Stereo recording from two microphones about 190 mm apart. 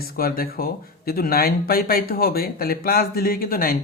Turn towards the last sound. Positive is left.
turn(degrees=50)  # may be behind; listen again after turning